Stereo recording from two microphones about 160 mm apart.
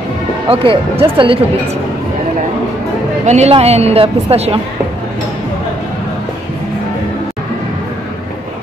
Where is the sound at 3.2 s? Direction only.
45° right (ahead or behind).